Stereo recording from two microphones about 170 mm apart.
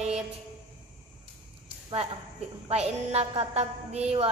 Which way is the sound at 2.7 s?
35° right (ahead or behind).